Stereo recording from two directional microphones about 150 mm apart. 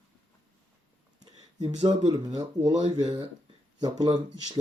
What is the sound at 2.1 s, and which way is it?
Speech, 25° right (ahead or behind).